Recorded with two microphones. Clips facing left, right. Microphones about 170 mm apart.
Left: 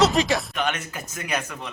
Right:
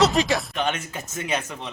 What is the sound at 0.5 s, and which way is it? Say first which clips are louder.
Speech: right 1 dB; 30° right (ahead or behind).